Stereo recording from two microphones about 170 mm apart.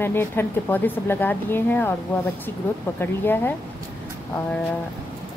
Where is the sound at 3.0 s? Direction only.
10° left (ahead or behind).